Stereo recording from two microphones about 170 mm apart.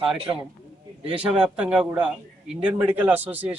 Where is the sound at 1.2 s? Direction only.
5° right (ahead or behind).